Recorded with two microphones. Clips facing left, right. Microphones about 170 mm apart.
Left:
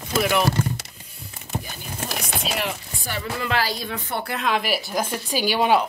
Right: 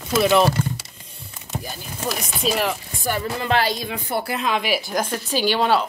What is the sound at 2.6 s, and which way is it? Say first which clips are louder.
Chopping: right 4 dB; 45° right (ahead or behind).